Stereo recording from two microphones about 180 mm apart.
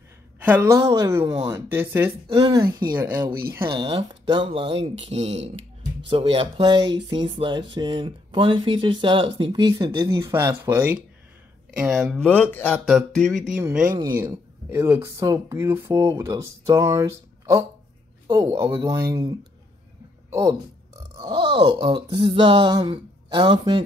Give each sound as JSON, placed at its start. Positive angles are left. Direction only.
{"t": 0.4, "sound": "speech", "side_deg": -10}
{"t": 1.5, "sound": "speech", "side_deg": -15}
{"t": 2.2, "sound": "speech", "side_deg": -30}
{"t": 2.6, "sound": "speech", "side_deg": -15}
{"t": 3.6, "sound": "speech", "side_deg": -30}
{"t": 11.8, "sound": "speech", "side_deg": 0}
{"t": 13.6, "sound": "speech", "side_deg": -15}
{"t": 21.2, "sound": "speech", "side_deg": -25}